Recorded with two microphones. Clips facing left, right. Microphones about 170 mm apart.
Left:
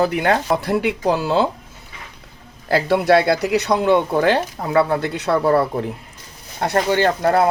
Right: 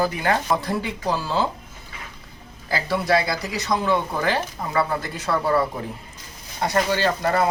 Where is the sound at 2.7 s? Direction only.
65° left (ahead or behind).